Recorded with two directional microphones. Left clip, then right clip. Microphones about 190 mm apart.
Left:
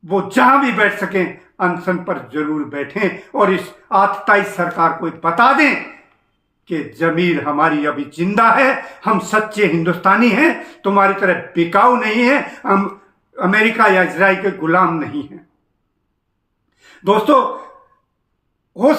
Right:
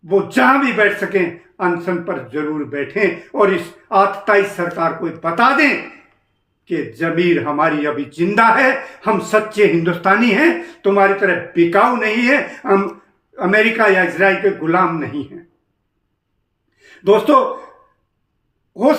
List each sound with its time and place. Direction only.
0.0 s a man's voice: 15° left (ahead or behind)
6.7 s a man's voice: 15° left (ahead or behind)
16.8 s a sound: 15° left (ahead or behind)
18.7 s owl: 15° left (ahead or behind)